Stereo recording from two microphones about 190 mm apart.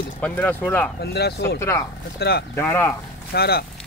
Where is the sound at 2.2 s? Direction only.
60° left (ahead or behind).